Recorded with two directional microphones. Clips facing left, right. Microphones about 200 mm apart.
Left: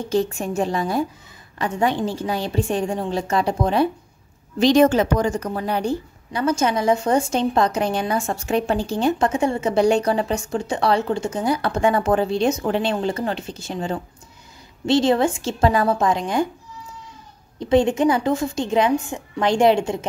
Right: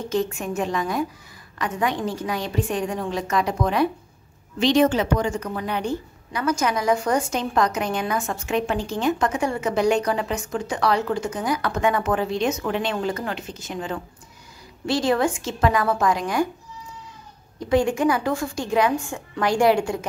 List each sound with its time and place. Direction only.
0.1 s a woman's voice: 30° left (ahead or behind)
4.6 s a woman's voice: 45° left (ahead or behind); by 16.4 s 25° left (ahead or behind)
17.6 s a woman's voice: 25° left (ahead or behind)